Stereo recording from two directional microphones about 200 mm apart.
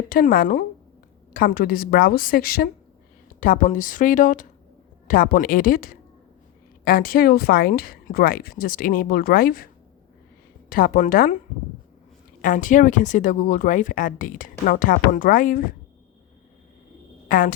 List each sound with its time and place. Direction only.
0.1 s speech: 45° left (ahead or behind)
10.7 s speech: 45° left (ahead or behind)
12.4 s speech: 40° left (ahead or behind)
17.2 s speech: 40° left (ahead or behind)